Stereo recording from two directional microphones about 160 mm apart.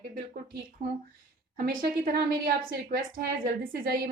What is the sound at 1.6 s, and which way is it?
A woman's voice, 65° right (ahead or behind).